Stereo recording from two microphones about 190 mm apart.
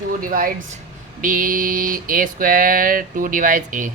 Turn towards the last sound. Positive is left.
turn(degrees=-45)  # may be behind; listen again after turning